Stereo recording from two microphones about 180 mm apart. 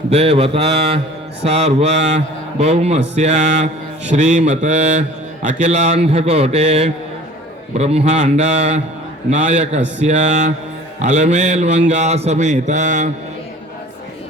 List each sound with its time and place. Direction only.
0.1 s speech: 35° right (ahead or behind)